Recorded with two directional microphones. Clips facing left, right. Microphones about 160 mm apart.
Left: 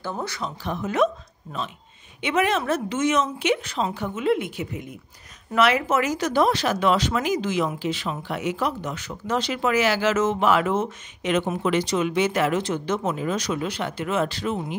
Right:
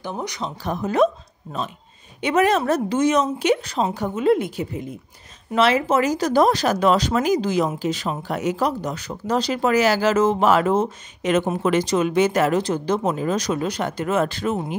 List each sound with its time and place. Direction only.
0.0 s speech: 15° right (ahead or behind)
0.7 s speech: 40° right (ahead or behind)